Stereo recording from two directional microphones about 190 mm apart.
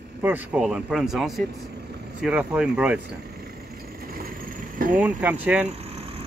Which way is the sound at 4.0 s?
50° right (ahead or behind).